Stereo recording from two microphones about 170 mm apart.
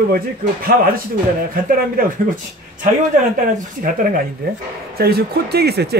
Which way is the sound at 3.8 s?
55° right (ahead or behind).